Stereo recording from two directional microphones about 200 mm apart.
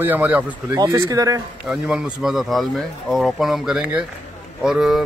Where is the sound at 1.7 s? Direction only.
5° right (ahead or behind).